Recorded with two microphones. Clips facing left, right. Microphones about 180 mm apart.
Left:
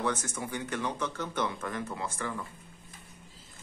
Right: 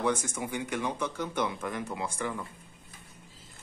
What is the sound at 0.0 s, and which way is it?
A man's voice, 10° right (ahead or behind).